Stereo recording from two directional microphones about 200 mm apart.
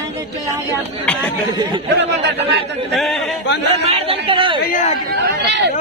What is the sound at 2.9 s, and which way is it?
Speech, centre (ahead or behind).